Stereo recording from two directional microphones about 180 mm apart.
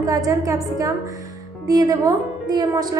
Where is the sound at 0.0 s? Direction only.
20° right (ahead or behind).